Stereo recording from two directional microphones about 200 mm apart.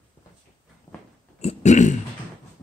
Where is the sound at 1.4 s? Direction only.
35° left (ahead or behind).